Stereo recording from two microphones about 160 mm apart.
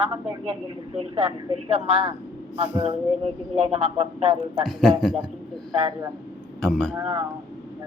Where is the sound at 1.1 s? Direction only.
30° right (ahead or behind).